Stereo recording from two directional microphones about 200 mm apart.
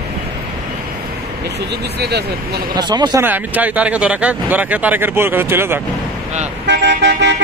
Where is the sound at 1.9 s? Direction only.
55° right (ahead or behind).